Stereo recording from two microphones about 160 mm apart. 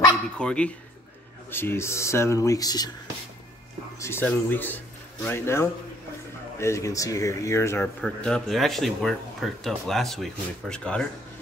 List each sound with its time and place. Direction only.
0.4 s speech: 5° left (ahead or behind); by 2.9 s 25° left (ahead or behind)
4.0 s speech: 15° left (ahead or behind)